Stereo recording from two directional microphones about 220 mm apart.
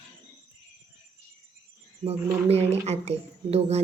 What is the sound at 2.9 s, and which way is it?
Speech, 30° right (ahead or behind).